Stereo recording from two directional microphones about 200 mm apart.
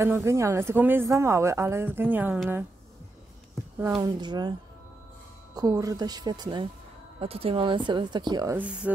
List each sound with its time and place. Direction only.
0.0 s speech: 15° right (ahead or behind)
3.8 s speech: 15° right (ahead or behind)
8.5 s speech: 5° right (ahead or behind)